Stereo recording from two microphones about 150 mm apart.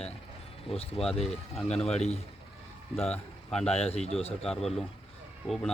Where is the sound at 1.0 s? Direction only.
40° left (ahead or behind).